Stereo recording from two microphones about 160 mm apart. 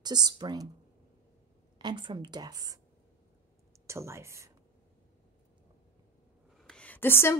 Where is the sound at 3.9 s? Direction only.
15° right (ahead or behind).